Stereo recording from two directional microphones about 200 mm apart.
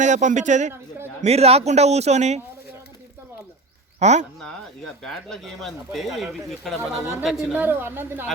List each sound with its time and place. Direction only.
0.0 s a man's voice: 35° right (ahead or behind)
4.0 s a man's voice: 35° right (ahead or behind)
5.0 s speech: centre (ahead or behind)